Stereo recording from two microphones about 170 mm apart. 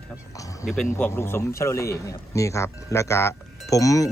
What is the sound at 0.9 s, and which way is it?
Speech, 10° left (ahead or behind).